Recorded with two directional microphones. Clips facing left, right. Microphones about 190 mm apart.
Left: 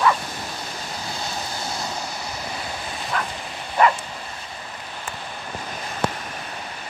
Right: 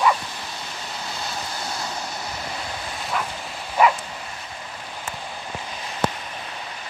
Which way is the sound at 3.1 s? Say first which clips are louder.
Even; 5° right (ahead or behind).